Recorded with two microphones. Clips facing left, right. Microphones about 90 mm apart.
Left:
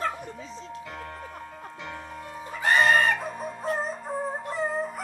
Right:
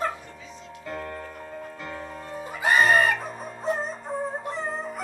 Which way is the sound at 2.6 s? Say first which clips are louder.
Right 1 dB; 10° right (ahead or behind).